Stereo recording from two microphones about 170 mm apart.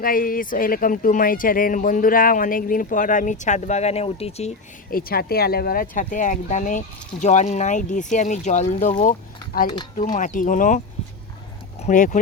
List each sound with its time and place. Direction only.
0.0 s speech: 55° left (ahead or behind); by 4.5 s 40° left (ahead or behind)
4.9 s speech: 60° left (ahead or behind)
11.8 s speech: 45° left (ahead or behind)